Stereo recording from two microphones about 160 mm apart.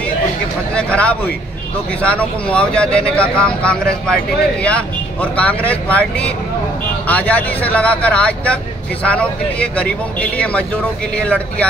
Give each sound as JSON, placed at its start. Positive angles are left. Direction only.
{"t": 0.7, "sound": "speech", "side_deg": 5}